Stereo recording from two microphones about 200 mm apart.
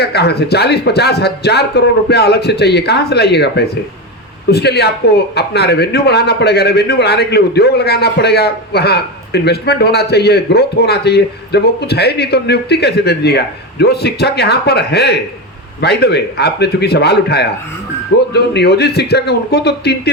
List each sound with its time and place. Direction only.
0.0 s a man's voice: 55° left (ahead or behind)